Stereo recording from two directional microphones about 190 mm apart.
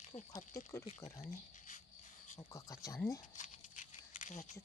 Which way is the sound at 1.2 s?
40° left (ahead or behind).